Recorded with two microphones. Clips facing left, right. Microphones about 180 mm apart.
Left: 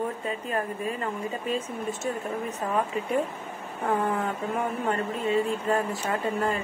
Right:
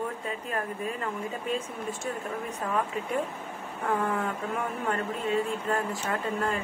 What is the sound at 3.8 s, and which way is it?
Speech, 10° left (ahead or behind).